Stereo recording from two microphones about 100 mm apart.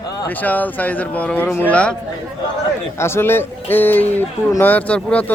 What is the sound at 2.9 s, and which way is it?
A man's voice, 25° left (ahead or behind).